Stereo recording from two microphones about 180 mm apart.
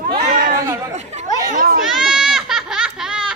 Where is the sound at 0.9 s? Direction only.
40° right (ahead or behind).